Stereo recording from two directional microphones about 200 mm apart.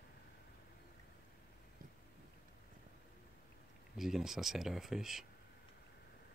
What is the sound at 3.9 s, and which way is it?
Speech, centre (ahead or behind).